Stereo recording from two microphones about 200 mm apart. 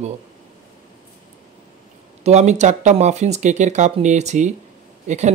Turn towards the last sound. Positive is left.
turn(degrees=-35)  # may be behind; listen again after turning